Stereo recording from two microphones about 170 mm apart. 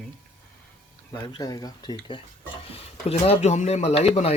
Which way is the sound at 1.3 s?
20° left (ahead or behind).